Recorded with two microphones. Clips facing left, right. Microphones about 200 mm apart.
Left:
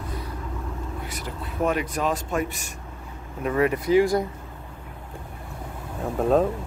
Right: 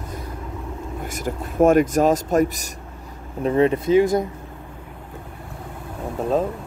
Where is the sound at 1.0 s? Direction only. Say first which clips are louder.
Right 6 dB; 45° right (ahead or behind).